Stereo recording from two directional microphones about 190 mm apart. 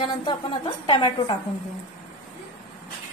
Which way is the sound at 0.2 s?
25° left (ahead or behind).